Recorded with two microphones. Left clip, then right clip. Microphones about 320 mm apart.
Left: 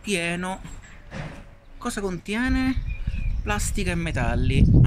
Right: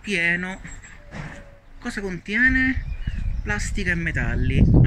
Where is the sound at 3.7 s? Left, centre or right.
Centre.